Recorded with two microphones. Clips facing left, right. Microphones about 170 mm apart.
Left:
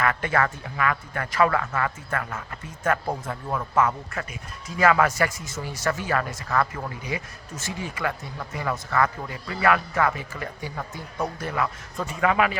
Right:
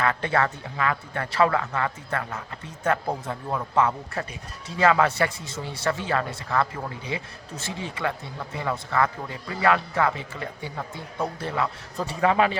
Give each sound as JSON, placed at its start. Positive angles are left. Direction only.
{"t": 0.0, "sound": "speech", "side_deg": -25}
{"t": 4.1, "sound": "speech", "side_deg": -30}